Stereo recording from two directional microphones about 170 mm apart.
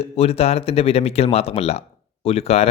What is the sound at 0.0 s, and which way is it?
Speech, 35° left (ahead or behind).